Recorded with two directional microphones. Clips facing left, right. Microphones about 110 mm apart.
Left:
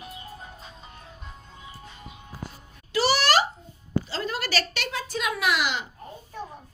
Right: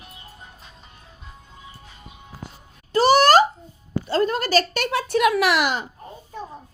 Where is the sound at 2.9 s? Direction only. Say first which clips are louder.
Right 8 dB; 45° right (ahead or behind).